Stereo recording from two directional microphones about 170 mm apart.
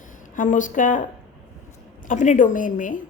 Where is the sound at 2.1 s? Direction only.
50° left (ahead or behind).